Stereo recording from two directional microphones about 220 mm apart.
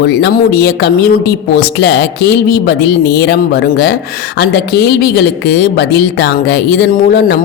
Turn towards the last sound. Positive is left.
turn(degrees=45)  # may be behind; listen again after turning